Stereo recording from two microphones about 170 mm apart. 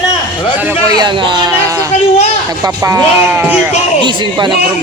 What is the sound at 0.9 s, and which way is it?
Speech, 25° right (ahead or behind).